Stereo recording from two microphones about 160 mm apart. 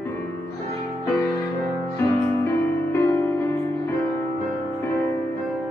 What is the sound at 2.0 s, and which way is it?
Music, 15° left (ahead or behind).